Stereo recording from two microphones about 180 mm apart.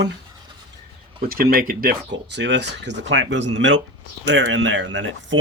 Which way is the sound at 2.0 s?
85° right.